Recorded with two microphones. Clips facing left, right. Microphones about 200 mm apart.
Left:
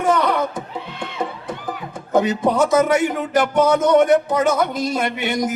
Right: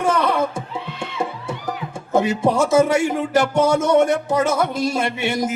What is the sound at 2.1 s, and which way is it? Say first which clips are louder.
Speech: left 1 dB; 25° right (ahead or behind).